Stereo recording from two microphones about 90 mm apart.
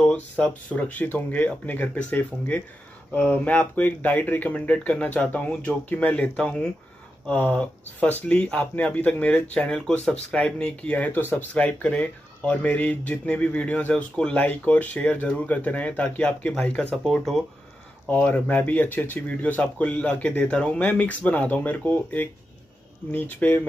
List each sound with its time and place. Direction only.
0.0 s speech: 10° left (ahead or behind)
16.9 s speech: 5° left (ahead or behind)
18.1 s speech: 15° left (ahead or behind)